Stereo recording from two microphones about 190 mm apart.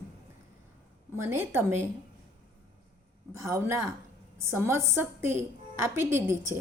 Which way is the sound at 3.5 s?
15° right (ahead or behind).